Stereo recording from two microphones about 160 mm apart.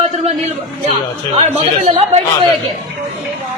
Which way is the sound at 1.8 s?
40° right (ahead or behind).